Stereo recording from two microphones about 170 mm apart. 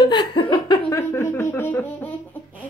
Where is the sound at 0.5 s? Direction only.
20° left (ahead or behind).